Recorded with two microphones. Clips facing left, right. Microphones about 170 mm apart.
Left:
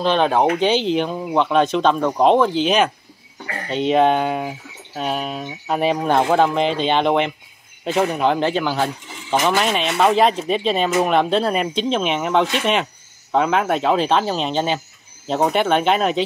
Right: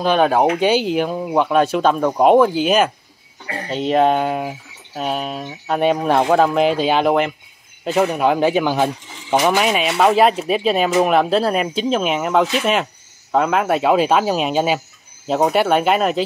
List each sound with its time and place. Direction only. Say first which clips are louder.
0.0 s speech: right 2 dB; 10° right (ahead or behind)
3.4 s a sound: right 2 dB; 30° right (ahead or behind)
3.7 s speech: even; centre (ahead or behind)